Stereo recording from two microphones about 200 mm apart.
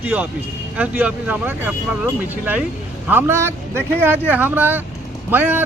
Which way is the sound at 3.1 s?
10° right (ahead or behind).